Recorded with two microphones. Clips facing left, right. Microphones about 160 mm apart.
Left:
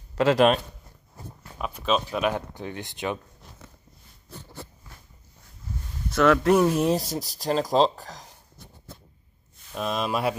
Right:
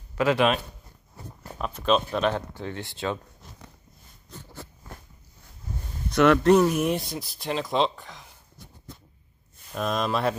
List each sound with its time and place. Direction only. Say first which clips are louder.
0.2 s speech: left 3 dB; 35° left (ahead or behind)
1.6 s speech: right 2 dB; 5° left (ahead or behind)
6.0 s speech: right 1 dB; centre (ahead or behind)
6.7 s speech: left 2 dB; 30° left (ahead or behind)
9.7 s speech: right 1 dB; centre (ahead or behind)